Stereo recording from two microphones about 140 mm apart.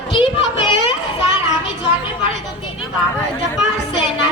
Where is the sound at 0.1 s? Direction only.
35° left (ahead or behind).